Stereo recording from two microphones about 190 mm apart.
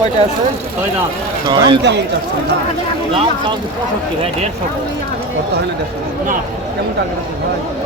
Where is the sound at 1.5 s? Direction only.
25° right (ahead or behind).